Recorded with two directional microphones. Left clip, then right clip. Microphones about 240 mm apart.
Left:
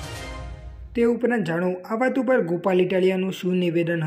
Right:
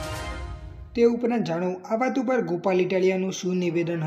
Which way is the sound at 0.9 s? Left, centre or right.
Centre.